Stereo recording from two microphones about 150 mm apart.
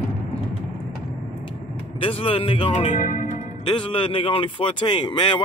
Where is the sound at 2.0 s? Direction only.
40° left (ahead or behind).